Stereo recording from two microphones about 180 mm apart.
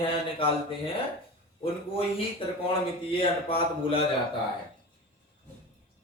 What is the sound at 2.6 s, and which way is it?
Speech, 30° left (ahead or behind).